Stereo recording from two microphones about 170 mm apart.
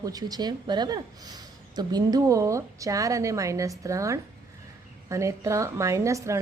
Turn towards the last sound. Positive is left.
turn(degrees=-15)  # may be behind; listen again after turning